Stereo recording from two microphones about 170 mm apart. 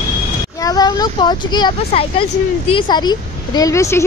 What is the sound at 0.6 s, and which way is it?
Speech, 25° left (ahead or behind).